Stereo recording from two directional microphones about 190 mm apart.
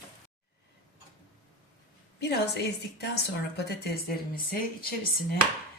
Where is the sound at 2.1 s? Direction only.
60° left (ahead or behind).